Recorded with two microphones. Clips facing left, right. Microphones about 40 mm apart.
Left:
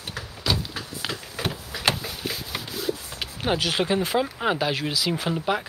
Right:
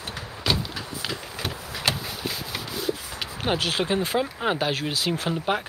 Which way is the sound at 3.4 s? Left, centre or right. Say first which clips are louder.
Left 1 dB; centre.